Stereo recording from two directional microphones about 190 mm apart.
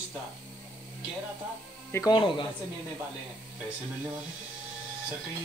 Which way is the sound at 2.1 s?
25° left (ahead or behind).